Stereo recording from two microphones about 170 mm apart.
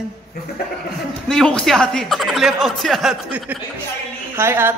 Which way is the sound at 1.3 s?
5° left (ahead or behind).